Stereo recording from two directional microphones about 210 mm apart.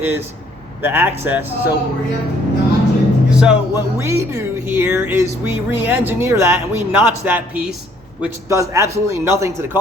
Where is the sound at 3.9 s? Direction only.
15° right (ahead or behind).